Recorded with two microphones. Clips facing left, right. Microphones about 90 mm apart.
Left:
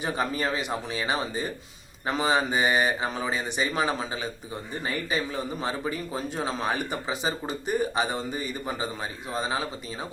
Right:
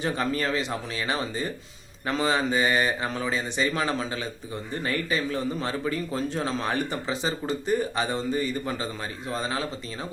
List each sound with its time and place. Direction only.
0.0 s speech: 15° left (ahead or behind)